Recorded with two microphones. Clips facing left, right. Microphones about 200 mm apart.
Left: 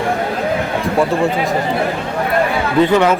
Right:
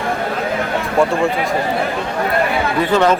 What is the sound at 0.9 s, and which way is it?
Speech, centre (ahead or behind).